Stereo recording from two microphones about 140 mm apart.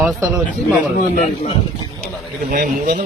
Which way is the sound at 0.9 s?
65° left (ahead or behind).